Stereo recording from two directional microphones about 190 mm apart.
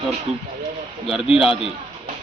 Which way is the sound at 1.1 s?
Centre (ahead or behind).